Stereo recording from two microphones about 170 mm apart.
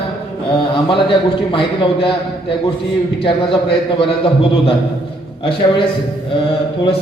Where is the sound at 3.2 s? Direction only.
30° left (ahead or behind).